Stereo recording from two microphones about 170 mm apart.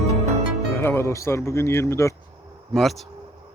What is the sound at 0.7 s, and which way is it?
Speech, 15° left (ahead or behind).